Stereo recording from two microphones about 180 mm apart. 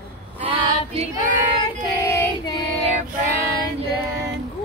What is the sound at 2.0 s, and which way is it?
Child singing, 20° left (ahead or behind).